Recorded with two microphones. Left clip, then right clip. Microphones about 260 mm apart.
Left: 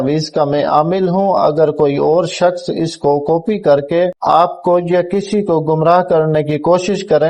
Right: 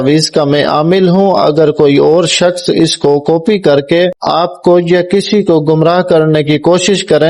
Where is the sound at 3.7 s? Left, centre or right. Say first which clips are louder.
Right 2 dB; right.